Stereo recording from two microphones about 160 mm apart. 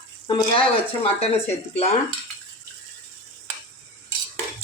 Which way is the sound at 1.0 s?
40° left (ahead or behind).